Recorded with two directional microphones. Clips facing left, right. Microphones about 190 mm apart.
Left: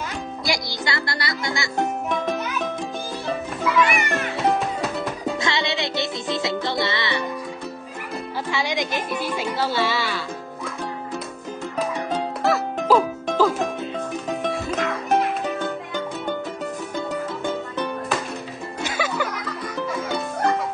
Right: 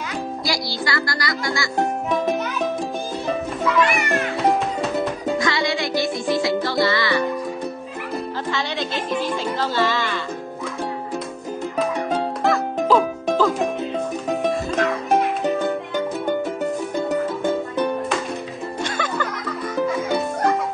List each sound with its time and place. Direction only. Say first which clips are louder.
0.5 s speech: even; 25° left (ahead or behind)
3.6 s music: right 1 dB; centre (ahead or behind)
5.4 s music: right 2 dB; 25° left (ahead or behind)
8.5 s music: left 4 dB; 10° left (ahead or behind)
12.4 s music: even; 5° left (ahead or behind)
14.4 s music: right 4 dB; centre (ahead or behind)
18.8 s music: even; 5° left (ahead or behind)